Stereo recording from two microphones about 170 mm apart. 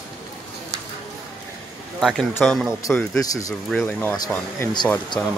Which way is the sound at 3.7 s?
5° left (ahead or behind).